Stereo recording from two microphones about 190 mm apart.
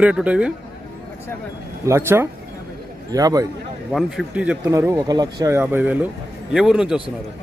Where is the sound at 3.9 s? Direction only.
5° right (ahead or behind).